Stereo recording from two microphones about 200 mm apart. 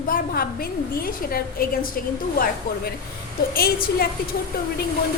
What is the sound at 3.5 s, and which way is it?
Speech, 50° left (ahead or behind).